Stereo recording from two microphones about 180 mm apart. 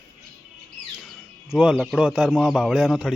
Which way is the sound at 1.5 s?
5° right (ahead or behind).